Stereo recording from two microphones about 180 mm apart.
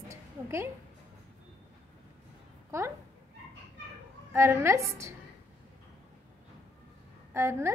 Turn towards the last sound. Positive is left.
turn(degrees=-15)  # may be behind; listen again after turning